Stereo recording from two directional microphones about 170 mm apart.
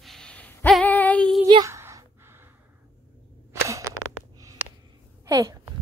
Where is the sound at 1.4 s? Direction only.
20° right (ahead or behind).